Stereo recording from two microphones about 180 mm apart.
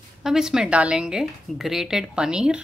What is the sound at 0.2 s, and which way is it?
Speech, 5° right (ahead or behind).